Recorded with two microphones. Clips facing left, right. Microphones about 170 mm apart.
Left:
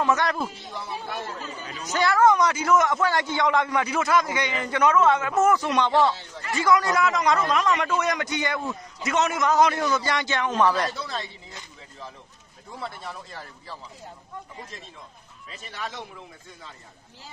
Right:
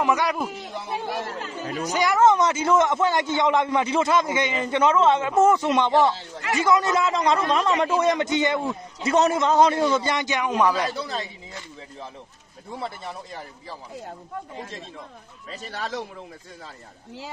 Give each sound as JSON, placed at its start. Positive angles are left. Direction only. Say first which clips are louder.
{"t": 0.0, "sound": "speech", "louder": "right 1 dB", "side_deg": -10}
{"t": 0.5, "sound": "speech", "louder": "right 4 dB", "side_deg": -80}
{"t": 1.9, "sound": "a man's voice", "louder": "right 1 dB", "side_deg": -15}
{"t": 12.7, "sound": "a man's voice", "louder": "right 3 dB", "side_deg": -25}
{"t": 15.4, "sound": "a man's voice", "louder": "right 4 dB", "side_deg": -40}